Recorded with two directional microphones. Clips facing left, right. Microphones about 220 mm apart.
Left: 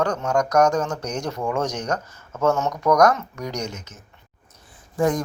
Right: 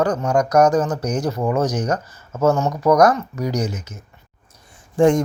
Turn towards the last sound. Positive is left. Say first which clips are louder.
# right 7 dB
turn(degrees=-30)  # may be behind; listen again after turning